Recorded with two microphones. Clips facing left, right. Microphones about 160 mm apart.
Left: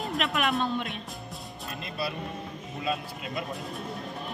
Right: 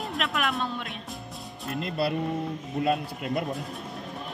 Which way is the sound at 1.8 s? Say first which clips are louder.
Right 7 dB; 65° right (ahead or behind).